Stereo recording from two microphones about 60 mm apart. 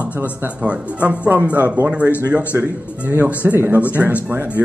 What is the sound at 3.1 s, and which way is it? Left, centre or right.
Speech, right.